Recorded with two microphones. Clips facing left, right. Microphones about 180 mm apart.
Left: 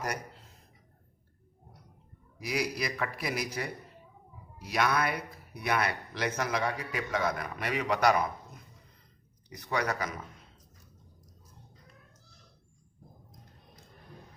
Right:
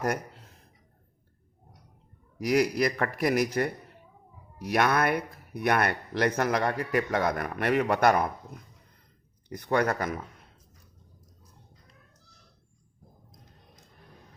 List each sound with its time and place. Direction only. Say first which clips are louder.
2.5 s speech: right 8 dB; 55° right (ahead or behind)
9.5 s speech: right 6 dB; 55° right (ahead or behind)